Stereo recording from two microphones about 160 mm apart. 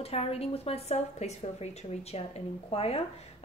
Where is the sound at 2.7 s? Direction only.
40° left (ahead or behind).